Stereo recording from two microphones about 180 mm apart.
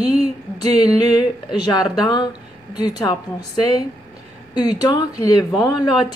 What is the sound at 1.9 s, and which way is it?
Speech, 25° left (ahead or behind).